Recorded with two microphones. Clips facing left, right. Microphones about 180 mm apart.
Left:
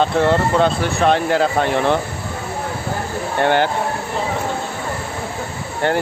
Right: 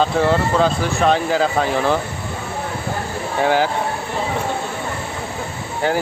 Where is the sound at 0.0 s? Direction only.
Centre (ahead or behind).